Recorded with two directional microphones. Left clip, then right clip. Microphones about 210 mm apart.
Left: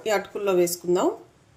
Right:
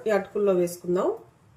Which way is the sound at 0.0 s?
35° left (ahead or behind).